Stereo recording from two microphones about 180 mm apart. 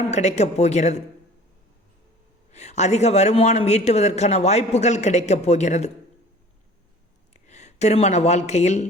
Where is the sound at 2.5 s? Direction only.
40° left (ahead or behind).